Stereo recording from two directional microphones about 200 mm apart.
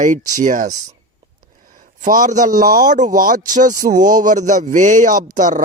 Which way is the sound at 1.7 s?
40° right (ahead or behind).